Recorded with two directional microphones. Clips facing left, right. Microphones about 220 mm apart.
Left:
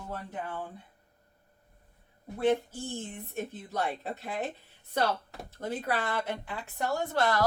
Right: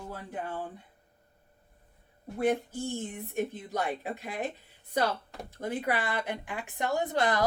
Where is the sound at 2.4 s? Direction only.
15° right (ahead or behind).